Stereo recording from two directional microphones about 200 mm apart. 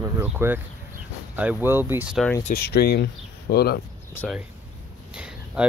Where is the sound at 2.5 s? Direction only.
55° left (ahead or behind).